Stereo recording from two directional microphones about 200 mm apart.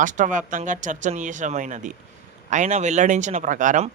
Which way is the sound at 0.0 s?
40° right (ahead or behind).